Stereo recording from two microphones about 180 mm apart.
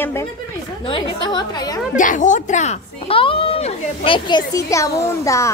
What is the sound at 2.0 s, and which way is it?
Speech, 45° left (ahead or behind).